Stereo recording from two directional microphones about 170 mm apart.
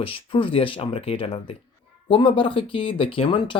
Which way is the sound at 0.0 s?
30° left (ahead or behind).